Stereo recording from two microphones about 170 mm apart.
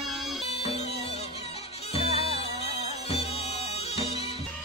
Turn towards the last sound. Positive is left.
turn(degrees=35)  # may be behind; listen again after turning